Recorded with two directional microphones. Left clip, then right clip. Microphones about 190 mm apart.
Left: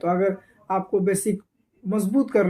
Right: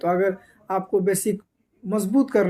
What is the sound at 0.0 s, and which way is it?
Speech, 25° right (ahead or behind).